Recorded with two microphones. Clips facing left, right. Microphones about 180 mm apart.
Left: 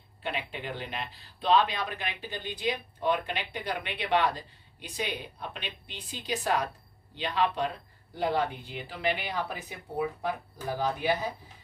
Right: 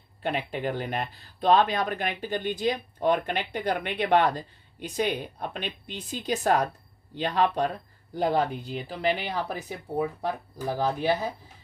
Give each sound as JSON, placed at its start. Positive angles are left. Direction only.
{"t": 0.2, "sound": "speech", "side_deg": -45}